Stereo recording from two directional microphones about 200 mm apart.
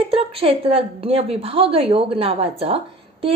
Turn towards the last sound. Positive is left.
turn(degrees=-30)  # may be behind; listen again after turning